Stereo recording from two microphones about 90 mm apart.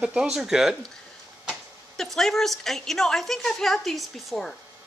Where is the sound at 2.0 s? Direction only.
5° left (ahead or behind).